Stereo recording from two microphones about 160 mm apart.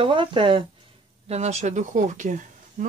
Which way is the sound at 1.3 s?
45° right (ahead or behind).